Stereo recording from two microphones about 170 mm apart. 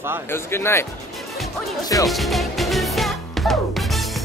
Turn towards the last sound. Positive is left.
turn(degrees=0)  # may be behind; listen again after turning